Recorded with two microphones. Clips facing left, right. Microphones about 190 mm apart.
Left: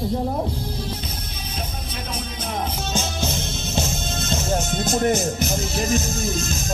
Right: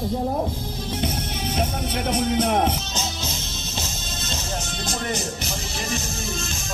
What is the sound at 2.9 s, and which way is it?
Music, 55° left (ahead or behind).